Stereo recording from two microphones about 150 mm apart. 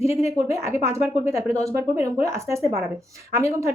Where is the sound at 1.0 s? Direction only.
50° left (ahead or behind).